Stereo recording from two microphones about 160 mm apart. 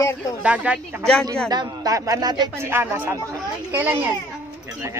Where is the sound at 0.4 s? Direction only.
10° right (ahead or behind).